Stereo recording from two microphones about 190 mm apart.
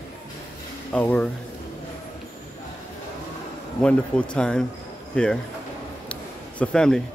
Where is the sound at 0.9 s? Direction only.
5° left (ahead or behind).